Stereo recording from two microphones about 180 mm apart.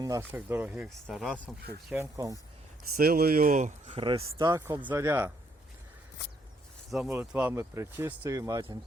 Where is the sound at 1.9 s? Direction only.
15° right (ahead or behind).